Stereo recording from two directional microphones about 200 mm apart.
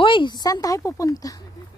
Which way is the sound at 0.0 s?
25° left (ahead or behind).